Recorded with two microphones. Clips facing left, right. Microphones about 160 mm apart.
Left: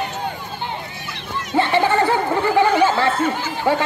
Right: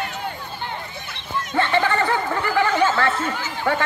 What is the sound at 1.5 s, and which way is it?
Chatter, 15° left (ahead or behind).